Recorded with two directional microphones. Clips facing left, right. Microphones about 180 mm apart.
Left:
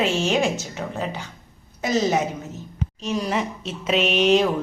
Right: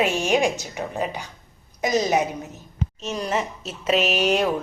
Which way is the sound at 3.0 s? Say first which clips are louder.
Left 2 dB; centre (ahead or behind).